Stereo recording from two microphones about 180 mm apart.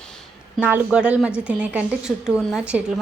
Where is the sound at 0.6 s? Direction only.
10° right (ahead or behind).